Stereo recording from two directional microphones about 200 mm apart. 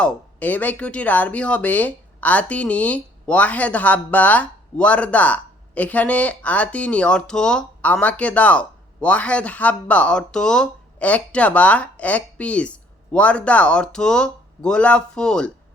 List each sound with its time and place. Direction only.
0.0 s speech: 10° left (ahead or behind)